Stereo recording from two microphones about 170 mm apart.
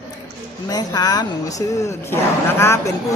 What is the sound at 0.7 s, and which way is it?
A woman's voice, 25° left (ahead or behind).